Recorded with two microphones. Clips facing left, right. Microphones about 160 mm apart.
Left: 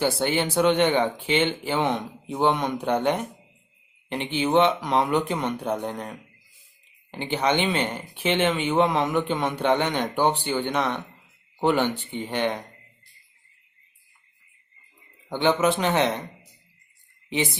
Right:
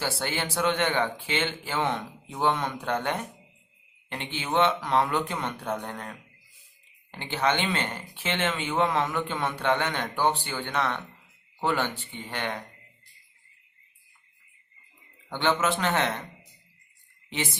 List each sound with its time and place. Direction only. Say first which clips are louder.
0.0 s speech: left 7 dB; 20° left (ahead or behind)
15.3 s speech: left 4 dB; 15° left (ahead or behind)
17.2 s speech: left 6 dB; 15° left (ahead or behind)